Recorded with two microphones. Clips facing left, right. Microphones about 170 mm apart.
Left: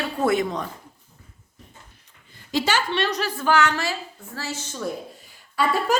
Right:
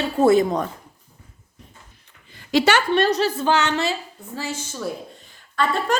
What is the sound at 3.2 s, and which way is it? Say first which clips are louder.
A woman's voice: right 1 dB; 25° right (ahead or behind).